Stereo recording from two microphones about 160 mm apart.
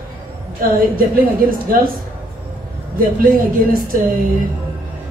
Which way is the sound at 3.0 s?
65° right (ahead or behind).